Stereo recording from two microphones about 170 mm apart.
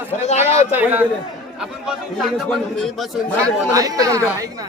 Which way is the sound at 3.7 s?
20° right (ahead or behind).